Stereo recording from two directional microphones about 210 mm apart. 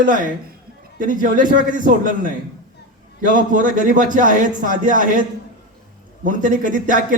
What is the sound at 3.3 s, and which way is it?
A man's voice, 40° right (ahead or behind).